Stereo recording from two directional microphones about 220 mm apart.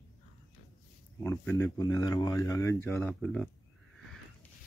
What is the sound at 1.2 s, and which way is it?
Speech, 10° left (ahead or behind).